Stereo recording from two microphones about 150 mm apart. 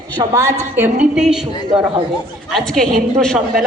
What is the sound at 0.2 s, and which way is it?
Speech, 20° right (ahead or behind).